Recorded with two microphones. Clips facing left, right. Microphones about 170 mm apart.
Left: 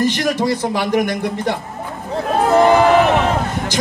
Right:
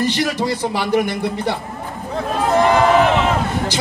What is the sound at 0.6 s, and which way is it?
Speech, 15° left (ahead or behind).